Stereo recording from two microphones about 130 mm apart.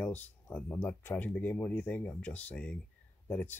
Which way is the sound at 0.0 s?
10° left (ahead or behind).